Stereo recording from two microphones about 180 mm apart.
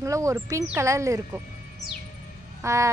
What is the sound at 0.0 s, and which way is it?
Speech, 15° right (ahead or behind).